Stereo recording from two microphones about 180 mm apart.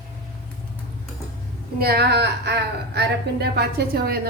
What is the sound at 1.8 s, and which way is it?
A woman's voice, 60° right (ahead or behind).